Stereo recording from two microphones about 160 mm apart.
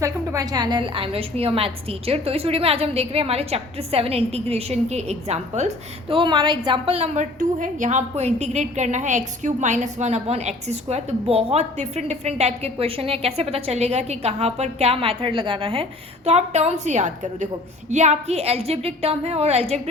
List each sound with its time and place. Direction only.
0.0 s a woman's voice: 20° right (ahead or behind); by 19.8 s 40° right (ahead or behind)